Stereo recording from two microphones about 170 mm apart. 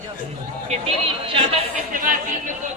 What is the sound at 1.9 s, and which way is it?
Speech, 50° right (ahead or behind).